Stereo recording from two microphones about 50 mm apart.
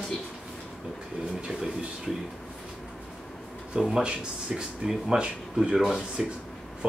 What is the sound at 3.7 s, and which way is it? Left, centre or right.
Speech, centre.